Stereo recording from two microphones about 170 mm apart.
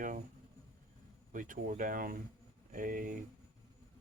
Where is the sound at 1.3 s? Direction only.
50° right (ahead or behind).